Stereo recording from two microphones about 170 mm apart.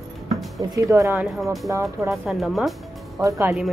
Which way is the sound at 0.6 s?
20° right (ahead or behind).